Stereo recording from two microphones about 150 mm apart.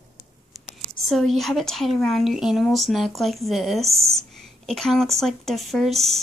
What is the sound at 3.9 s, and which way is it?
Speech, 20° right (ahead or behind).